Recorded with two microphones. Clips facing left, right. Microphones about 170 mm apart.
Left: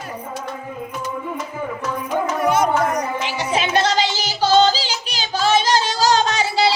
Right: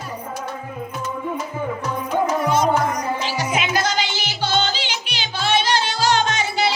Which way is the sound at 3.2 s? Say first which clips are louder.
Even; 20° left (ahead or behind).